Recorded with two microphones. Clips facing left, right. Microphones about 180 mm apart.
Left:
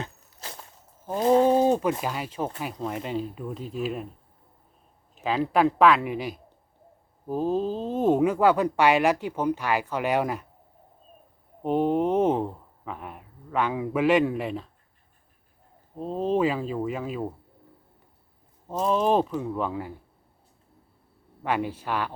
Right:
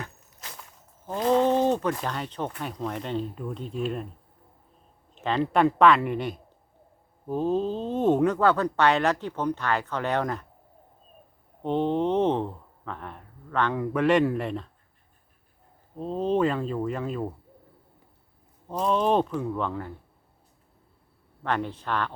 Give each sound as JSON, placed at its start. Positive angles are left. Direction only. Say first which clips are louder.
{"t": 0.0, "sound": "walk", "louder": "left 3 dB", "side_deg": 30}
{"t": 1.3, "sound": "a sound", "louder": "left 2 dB", "side_deg": 10}
{"t": 1.9, "sound": "speech", "louder": "left 1 dB", "side_deg": 10}
{"t": 5.1, "sound": "speech", "louder": "even", "side_deg": 5}
{"t": 11.6, "sound": "speech", "louder": "left 2 dB", "side_deg": 10}
{"t": 16.0, "sound": "speech", "louder": "even", "side_deg": 5}
{"t": 18.7, "sound": "speech", "louder": "left 1 dB", "side_deg": 0}
{"t": 21.4, "sound": "speech", "louder": "left 1 dB", "side_deg": 10}